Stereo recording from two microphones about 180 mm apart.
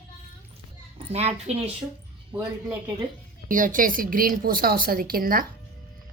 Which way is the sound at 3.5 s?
50° right (ahead or behind).